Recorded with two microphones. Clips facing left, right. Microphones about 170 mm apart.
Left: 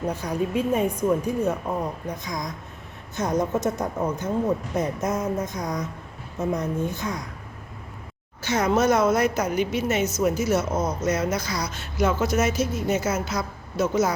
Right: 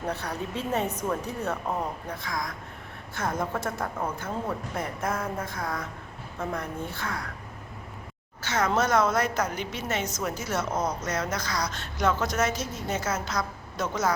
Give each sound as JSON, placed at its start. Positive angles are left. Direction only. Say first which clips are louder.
{"t": 0.1, "sound": "a woman's voice", "louder": "left 6 dB", "side_deg": 10}
{"t": 8.4, "sound": "speech", "louder": "left 4 dB", "side_deg": 10}